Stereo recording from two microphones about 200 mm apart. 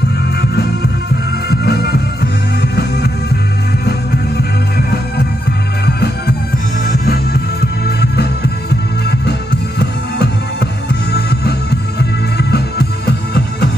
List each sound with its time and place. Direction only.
1.5 s music: 55° left (ahead or behind)
7.8 s music: 55° left (ahead or behind)
9.8 s music: 55° left (ahead or behind)